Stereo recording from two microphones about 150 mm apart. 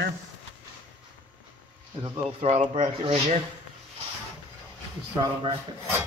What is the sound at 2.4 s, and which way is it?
Speech, 45° right (ahead or behind).